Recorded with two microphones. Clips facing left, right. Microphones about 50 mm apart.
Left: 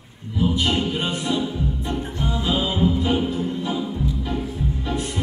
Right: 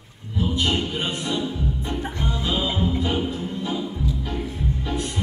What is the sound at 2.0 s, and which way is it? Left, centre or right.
Music, right.